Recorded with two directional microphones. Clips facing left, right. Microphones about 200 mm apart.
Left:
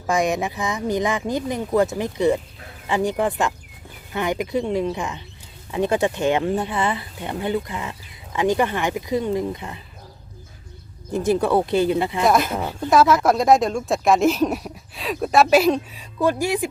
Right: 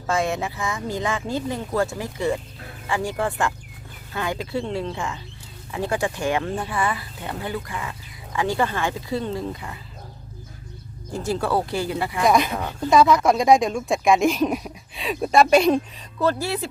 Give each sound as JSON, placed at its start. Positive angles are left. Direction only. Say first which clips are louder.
{"t": 0.1, "sound": "speech", "louder": "left 3 dB", "side_deg": 15}
{"t": 11.1, "sound": "speech", "louder": "left 5 dB", "side_deg": 20}
{"t": 12.2, "sound": "speech", "louder": "right 1 dB", "side_deg": 0}
{"t": 12.5, "sound": "speech", "louder": "left 1 dB", "side_deg": 20}
{"t": 12.9, "sound": "speech", "louder": "even", "side_deg": 5}